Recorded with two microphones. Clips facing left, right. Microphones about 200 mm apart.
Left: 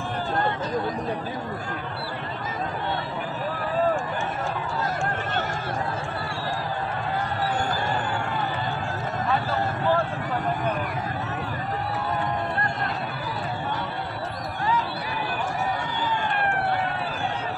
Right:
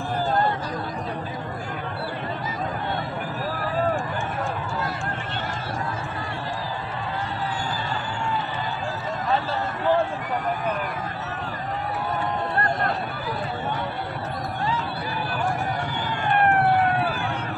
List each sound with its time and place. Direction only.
16.3 s vehicle: 55° right (ahead or behind)